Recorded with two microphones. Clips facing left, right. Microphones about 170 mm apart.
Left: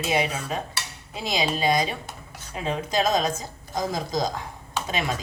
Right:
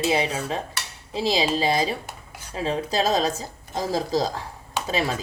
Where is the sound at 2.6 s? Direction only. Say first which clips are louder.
Right 1 dB; 30° right (ahead or behind).